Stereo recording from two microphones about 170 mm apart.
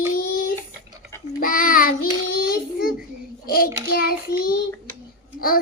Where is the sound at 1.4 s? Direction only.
55° left (ahead or behind).